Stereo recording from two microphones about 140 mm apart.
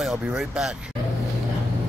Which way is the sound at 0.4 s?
5° right (ahead or behind).